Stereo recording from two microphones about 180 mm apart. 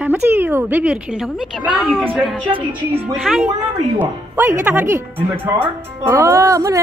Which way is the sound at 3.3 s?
Centre (ahead or behind).